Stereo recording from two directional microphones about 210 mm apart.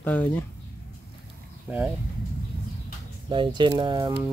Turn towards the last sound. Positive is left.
turn(degrees=-20)  # may be behind; listen again after turning